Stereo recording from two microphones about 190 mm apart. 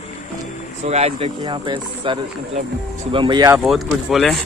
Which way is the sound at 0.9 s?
35° right (ahead or behind).